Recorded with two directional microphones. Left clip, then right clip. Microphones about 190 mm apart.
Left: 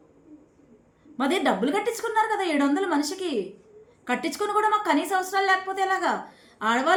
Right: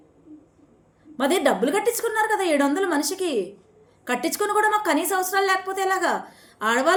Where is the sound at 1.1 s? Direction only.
15° left (ahead or behind).